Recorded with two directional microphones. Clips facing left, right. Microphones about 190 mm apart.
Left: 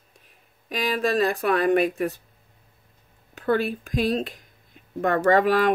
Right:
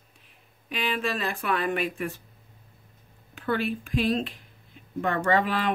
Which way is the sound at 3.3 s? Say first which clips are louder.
Left 4 dB; 40° left (ahead or behind).